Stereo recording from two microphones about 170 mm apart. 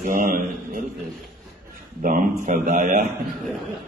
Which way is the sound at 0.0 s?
50° right (ahead or behind).